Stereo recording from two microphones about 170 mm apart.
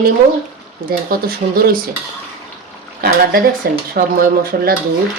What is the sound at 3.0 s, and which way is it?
Speech, 60° right (ahead or behind).